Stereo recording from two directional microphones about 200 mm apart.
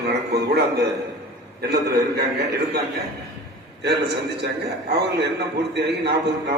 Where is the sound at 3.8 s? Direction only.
55° right (ahead or behind).